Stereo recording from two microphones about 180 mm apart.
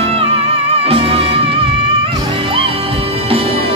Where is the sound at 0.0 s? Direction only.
35° right (ahead or behind).